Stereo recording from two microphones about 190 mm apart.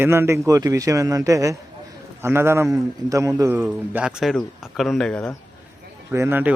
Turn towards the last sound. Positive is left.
turn(degrees=-10)  # may be behind; listen again after turning